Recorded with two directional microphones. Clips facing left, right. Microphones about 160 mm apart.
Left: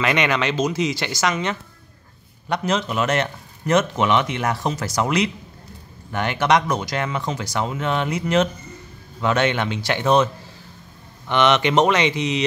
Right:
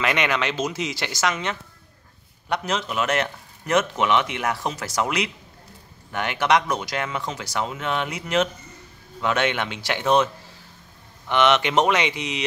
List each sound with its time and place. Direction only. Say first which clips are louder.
0.0 s speech: left 3 dB; 5° right (ahead or behind)